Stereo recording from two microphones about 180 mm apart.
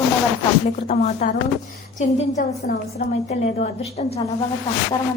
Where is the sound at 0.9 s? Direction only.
50° left (ahead or behind).